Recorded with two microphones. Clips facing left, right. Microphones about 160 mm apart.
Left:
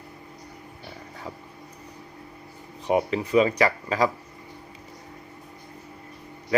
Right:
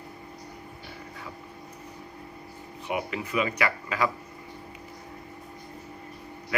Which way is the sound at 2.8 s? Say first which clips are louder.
Left 8 dB; 35° left (ahead or behind).